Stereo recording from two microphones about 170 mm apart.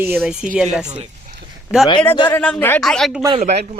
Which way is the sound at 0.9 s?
40° right (ahead or behind).